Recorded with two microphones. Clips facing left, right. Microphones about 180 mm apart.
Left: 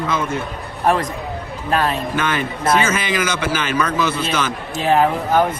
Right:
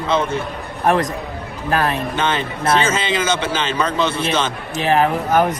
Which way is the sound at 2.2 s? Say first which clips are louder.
Right 1 dB; 25° right (ahead or behind).